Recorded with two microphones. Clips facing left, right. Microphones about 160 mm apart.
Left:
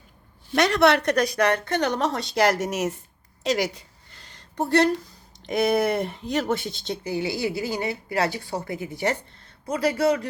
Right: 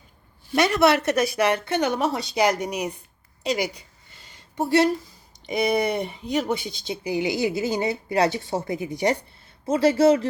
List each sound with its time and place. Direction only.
0.5 s speech: centre (ahead or behind)
3.4 s a sound: centre (ahead or behind)
5.5 s speech: centre (ahead or behind)
7.0 s a woman's voice: 15° right (ahead or behind)